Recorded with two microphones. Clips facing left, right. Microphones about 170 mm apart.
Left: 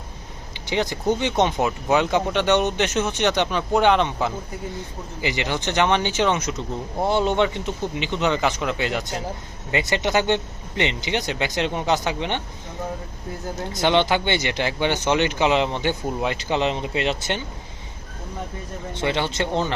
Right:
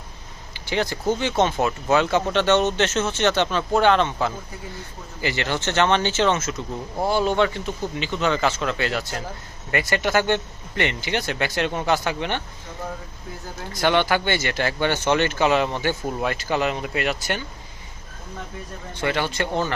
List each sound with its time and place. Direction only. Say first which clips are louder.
0.5 s speech: even; 20° left (ahead or behind)
13.6 s speech: left 1 dB; 20° left (ahead or behind)
18.9 s speech: even; 20° left (ahead or behind)